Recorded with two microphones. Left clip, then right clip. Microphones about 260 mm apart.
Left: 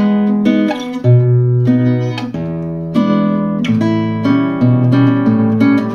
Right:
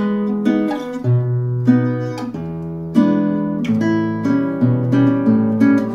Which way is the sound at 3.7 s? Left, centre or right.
Left.